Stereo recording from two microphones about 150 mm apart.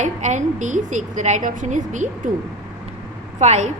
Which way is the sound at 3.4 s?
50° right (ahead or behind).